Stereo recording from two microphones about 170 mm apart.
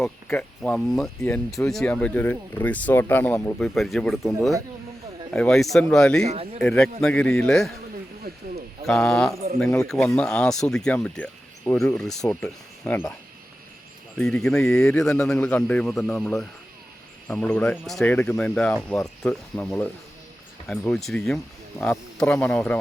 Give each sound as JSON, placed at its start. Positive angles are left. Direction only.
{"t": 0.0, "sound": "a man's voice", "side_deg": 10}
{"t": 6.2, "sound": "speech", "side_deg": -35}
{"t": 6.6, "sound": "a man's voice", "side_deg": 5}
{"t": 8.3, "sound": "speech", "side_deg": -60}
{"t": 8.9, "sound": "a man's voice", "side_deg": 5}
{"t": 12.8, "sound": "speech", "side_deg": 15}
{"t": 14.2, "sound": "a man's voice", "side_deg": 5}